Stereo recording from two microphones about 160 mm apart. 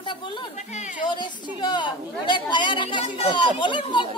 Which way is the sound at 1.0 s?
30° left (ahead or behind).